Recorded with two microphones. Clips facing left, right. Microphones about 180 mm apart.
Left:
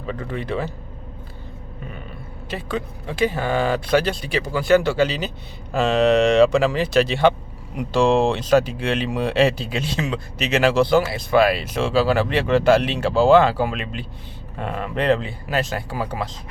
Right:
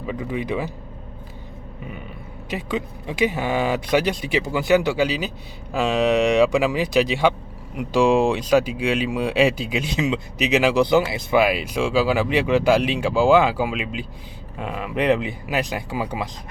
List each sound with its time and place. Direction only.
0.0 s speech: 10° right (ahead or behind)
2.5 s speech: 15° right (ahead or behind)